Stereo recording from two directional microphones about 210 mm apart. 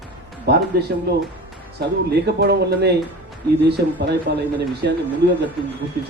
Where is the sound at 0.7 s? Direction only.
50° right (ahead or behind).